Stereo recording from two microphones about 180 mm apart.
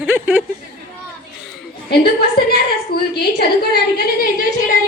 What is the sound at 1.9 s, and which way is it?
A woman's voice, 60° left (ahead or behind).